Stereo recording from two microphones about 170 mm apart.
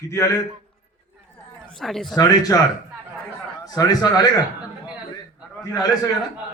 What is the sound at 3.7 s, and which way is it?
Speech, 20° left (ahead or behind).